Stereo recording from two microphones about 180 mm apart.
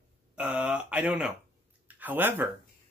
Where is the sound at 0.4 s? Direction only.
10° right (ahead or behind).